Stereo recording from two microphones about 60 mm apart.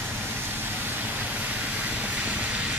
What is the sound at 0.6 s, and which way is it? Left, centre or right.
Vehicle, right.